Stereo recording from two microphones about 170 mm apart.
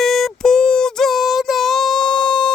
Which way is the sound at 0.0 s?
Centre (ahead or behind).